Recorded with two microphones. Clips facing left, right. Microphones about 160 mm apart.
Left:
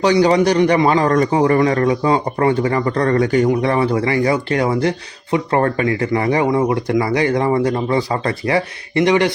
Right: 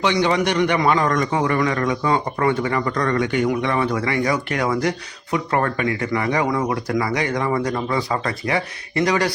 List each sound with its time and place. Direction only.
0.0 s a man's voice: 35° left (ahead or behind)